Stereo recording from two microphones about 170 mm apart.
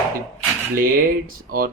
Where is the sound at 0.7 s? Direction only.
55° right (ahead or behind).